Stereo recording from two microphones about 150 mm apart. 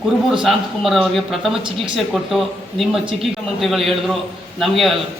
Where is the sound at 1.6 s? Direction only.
35° right (ahead or behind).